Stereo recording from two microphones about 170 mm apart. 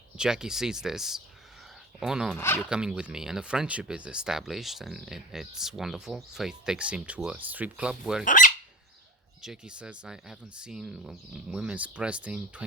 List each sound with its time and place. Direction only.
0.2 s speech: 5° right (ahead or behind)
2.3 s speech: 15° left (ahead or behind)
2.6 s speech: 5° right (ahead or behind)
8.2 s speech: 50° left (ahead or behind)
9.4 s speech: 5° right (ahead or behind)